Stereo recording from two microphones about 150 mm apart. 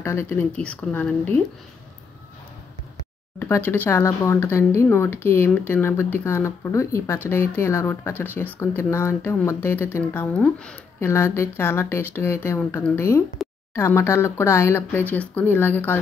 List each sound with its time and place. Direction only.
0.0 s speech: 15° left (ahead or behind)
3.3 s speech: 15° left (ahead or behind)
13.4 s a sound: centre (ahead or behind)
13.7 s speech: 15° left (ahead or behind)